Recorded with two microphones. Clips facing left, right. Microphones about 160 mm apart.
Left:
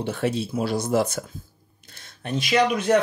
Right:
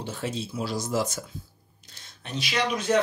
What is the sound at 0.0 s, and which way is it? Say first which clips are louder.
Speech: left 7 dB; 65° left (ahead or behind).